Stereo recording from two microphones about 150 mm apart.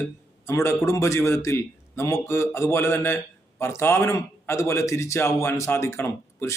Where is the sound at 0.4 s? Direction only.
15° left (ahead or behind).